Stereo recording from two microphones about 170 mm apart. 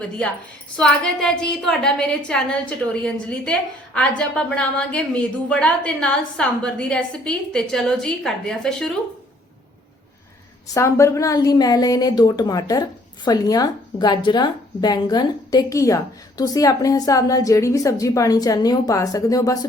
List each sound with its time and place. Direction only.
0.8 s a woman's voice: 5° left (ahead or behind)
10.8 s a woman's voice: 15° left (ahead or behind)